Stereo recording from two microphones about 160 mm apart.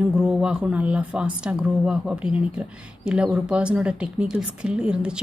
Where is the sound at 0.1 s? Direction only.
5° right (ahead or behind).